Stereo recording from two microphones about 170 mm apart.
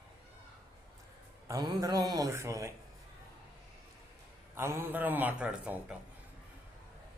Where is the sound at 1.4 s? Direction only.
20° right (ahead or behind).